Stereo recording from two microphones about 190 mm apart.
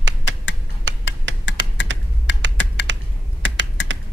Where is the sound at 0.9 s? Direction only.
70° right (ahead or behind).